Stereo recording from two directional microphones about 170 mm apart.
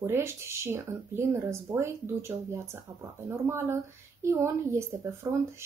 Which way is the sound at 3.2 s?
15° right (ahead or behind).